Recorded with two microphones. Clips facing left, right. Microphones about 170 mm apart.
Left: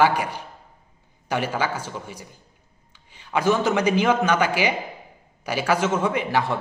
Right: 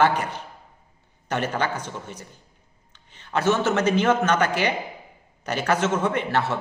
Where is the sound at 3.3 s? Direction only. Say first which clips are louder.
Left 1 dB; 10° left (ahead or behind).